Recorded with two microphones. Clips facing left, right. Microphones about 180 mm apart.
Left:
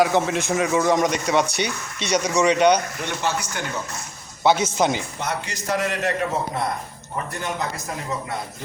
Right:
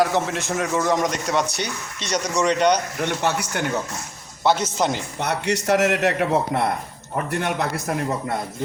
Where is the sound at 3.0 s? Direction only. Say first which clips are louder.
Right 3 dB; 65° right (ahead or behind).